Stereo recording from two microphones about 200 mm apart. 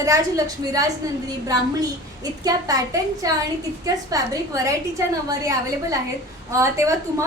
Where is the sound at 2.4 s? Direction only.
15° right (ahead or behind).